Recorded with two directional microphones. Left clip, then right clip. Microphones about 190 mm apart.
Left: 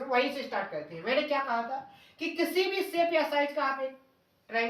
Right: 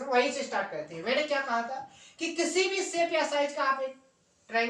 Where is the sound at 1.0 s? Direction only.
15° right (ahead or behind).